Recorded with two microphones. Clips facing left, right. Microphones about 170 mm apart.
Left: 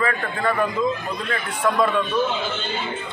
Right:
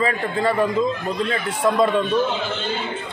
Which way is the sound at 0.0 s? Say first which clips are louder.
Right 2 dB; 30° right (ahead or behind).